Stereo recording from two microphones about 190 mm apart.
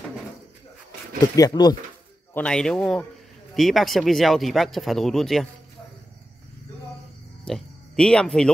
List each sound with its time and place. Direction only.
1.3 s speech: 20° left (ahead or behind)
2.3 s speech: 5° left (ahead or behind)
7.4 s speech: 5° left (ahead or behind)